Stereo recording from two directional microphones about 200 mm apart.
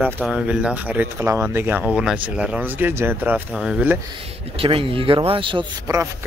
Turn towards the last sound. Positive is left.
turn(degrees=-15)  # may be behind; listen again after turning